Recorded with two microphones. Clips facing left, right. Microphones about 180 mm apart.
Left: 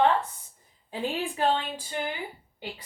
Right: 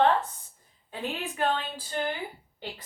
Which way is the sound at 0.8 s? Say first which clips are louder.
Left 4 dB; 30° left (ahead or behind).